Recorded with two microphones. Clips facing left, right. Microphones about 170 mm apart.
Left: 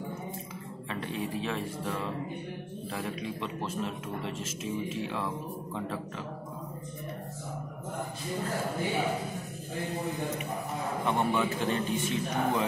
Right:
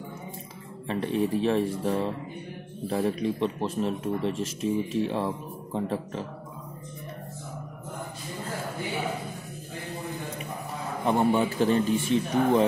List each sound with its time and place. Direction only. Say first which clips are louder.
0.8 s speech: right 9 dB; 35° right (ahead or behind)
11.1 s speech: right 6 dB; 35° right (ahead or behind)